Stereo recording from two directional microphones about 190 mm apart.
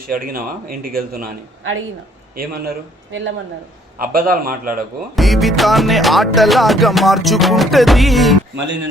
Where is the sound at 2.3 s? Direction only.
50° right (ahead or behind).